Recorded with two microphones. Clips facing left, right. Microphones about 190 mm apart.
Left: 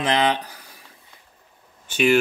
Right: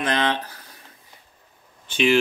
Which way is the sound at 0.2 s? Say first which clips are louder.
Left 2 dB; 15° left (ahead or behind).